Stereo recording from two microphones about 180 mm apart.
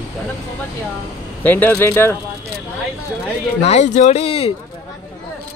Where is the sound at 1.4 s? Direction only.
10° left (ahead or behind).